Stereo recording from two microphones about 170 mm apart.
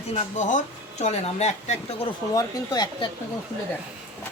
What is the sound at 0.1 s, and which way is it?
Speech, 45° left (ahead or behind).